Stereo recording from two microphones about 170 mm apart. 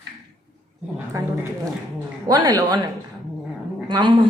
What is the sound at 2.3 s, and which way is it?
Speech, 25° right (ahead or behind).